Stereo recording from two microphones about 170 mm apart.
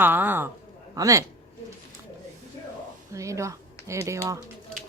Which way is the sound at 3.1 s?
20° right (ahead or behind).